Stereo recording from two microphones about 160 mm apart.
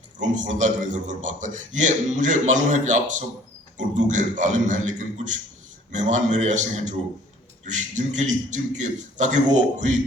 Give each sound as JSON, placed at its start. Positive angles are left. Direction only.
{"t": 0.2, "sound": "a man's voice", "side_deg": -50}